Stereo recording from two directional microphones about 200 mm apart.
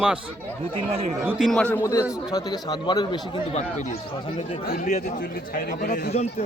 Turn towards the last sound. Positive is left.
turn(degrees=50)  # may be behind; listen again after turning